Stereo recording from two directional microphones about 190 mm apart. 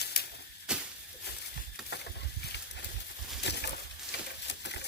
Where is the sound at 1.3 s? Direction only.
60° left (ahead or behind).